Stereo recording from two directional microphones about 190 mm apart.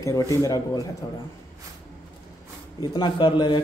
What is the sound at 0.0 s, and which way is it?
Speech, 15° left (ahead or behind).